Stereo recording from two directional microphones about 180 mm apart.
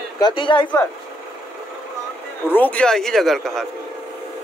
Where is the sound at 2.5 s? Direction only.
10° left (ahead or behind).